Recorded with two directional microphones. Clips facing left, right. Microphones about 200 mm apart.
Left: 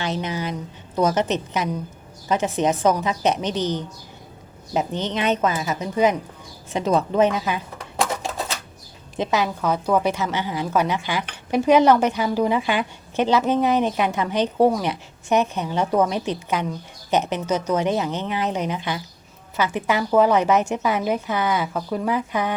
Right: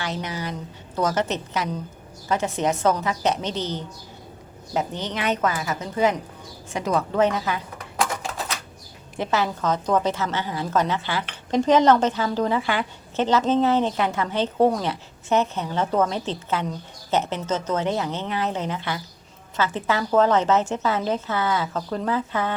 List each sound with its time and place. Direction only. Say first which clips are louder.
0.0 s a woman's voice: left 3 dB; 20° left (ahead or behind)
9.1 s speech: left 2 dB; 15° left (ahead or behind)